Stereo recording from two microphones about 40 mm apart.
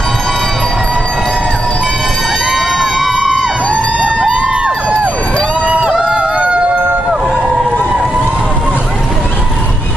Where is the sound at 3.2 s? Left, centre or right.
Centre.